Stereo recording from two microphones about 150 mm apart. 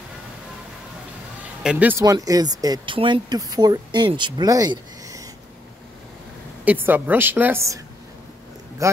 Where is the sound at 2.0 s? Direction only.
25° right (ahead or behind).